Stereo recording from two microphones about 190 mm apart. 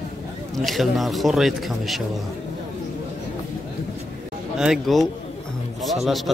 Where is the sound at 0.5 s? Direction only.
Centre (ahead or behind).